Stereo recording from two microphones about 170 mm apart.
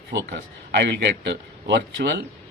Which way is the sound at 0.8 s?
75° right (ahead or behind).